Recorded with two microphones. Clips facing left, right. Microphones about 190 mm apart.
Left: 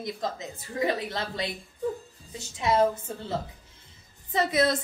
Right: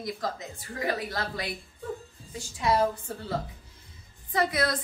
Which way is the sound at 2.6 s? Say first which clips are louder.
Left 2 dB; 20° left (ahead or behind).